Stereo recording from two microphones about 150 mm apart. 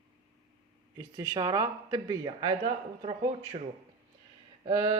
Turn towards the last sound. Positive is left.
turn(degrees=-25)  # may be behind; listen again after turning